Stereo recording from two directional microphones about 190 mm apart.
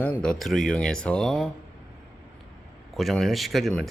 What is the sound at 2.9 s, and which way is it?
Speech, centre (ahead or behind).